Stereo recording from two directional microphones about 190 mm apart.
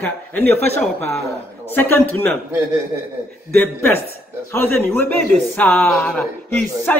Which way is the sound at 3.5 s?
10° left (ahead or behind).